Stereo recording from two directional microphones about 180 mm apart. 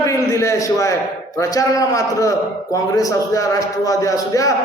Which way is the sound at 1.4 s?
20° left (ahead or behind).